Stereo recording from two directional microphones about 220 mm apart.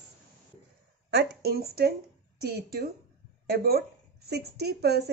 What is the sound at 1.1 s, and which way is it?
A woman's voice, 50° right (ahead or behind).